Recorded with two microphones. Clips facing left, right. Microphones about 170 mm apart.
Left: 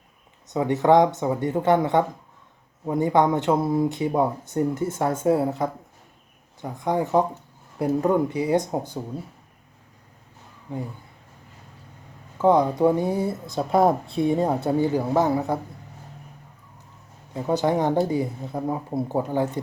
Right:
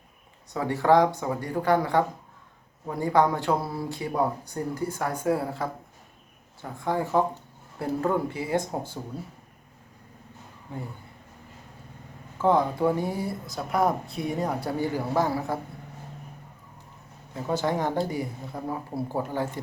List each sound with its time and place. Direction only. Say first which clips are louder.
0.4 s speech: left 4 dB; 20° left (ahead or behind)
10.7 s speech: left 6 dB; 15° left (ahead or behind)
12.4 s speech: left 4 dB; 15° left (ahead or behind)
17.3 s speech: left 5 dB; 20° left (ahead or behind)